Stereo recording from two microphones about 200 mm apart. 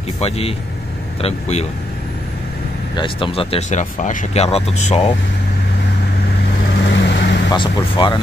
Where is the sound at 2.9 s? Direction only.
25° left (ahead or behind).